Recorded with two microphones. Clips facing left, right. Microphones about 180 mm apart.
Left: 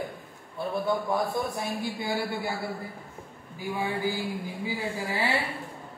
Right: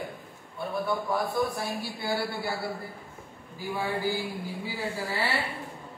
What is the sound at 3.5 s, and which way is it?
A man's voice, 20° left (ahead or behind).